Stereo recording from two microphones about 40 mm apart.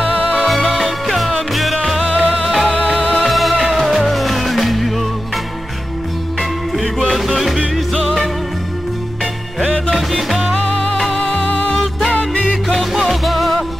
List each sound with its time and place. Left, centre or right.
0.5 s music: centre
2.0 s music: left
2.3 s music: centre
7.2 s music: centre
9.9 s music: centre
11.1 s music: centre
11.7 s music: centre
12.1 s music: left
12.6 s music: centre